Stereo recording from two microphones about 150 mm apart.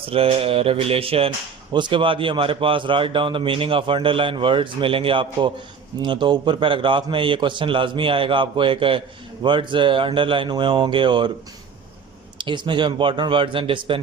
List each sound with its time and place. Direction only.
0.1 s a man's voice: 40° right (ahead or behind)
12.4 s a man's voice: 30° right (ahead or behind)